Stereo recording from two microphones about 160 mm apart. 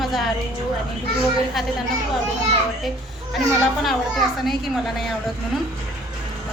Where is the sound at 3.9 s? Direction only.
Centre (ahead or behind).